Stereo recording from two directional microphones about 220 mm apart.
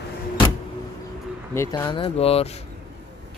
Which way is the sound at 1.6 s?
15° left (ahead or behind).